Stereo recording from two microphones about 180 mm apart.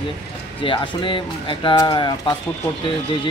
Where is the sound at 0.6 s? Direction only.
30° left (ahead or behind).